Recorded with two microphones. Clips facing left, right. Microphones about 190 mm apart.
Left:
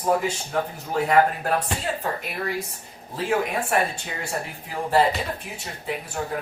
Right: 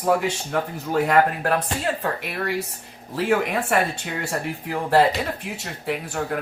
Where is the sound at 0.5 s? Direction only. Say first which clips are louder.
Right 3 dB; 65° right (ahead or behind).